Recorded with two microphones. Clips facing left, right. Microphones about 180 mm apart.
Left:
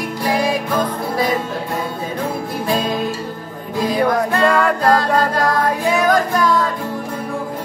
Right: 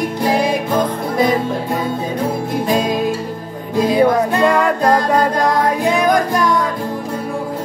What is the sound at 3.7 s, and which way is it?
Music, 20° right (ahead or behind).